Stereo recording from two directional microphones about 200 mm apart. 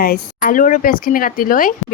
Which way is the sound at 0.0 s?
45° left (ahead or behind).